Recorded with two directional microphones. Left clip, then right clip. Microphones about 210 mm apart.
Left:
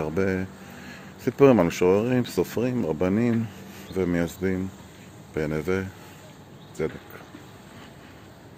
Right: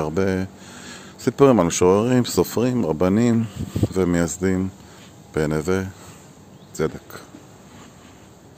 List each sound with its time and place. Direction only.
0.0 s speech: 20° right (ahead or behind)
6.8 s speech: 40° right (ahead or behind)